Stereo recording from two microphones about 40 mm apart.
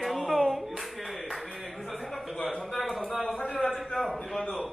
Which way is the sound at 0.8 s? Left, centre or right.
Centre.